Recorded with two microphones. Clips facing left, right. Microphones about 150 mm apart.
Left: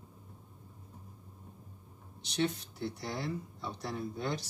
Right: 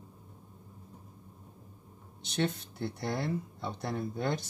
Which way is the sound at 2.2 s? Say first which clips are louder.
Right 1 dB; 55° right (ahead or behind).